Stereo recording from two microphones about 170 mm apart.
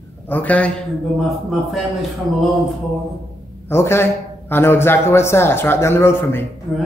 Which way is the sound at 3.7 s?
15° left (ahead or behind).